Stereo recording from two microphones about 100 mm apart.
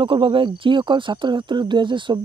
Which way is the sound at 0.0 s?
60° right (ahead or behind).